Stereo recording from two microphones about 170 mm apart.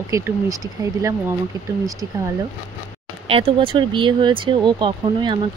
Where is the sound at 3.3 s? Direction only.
35° right (ahead or behind).